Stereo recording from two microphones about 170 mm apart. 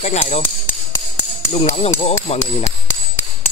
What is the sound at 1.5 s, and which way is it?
Speech, 40° left (ahead or behind).